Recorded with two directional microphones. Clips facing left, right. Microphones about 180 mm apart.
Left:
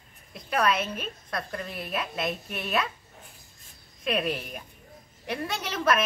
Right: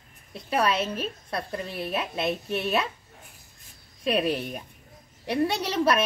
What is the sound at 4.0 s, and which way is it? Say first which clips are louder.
A woman's voice: right 3 dB; 35° right (ahead or behind).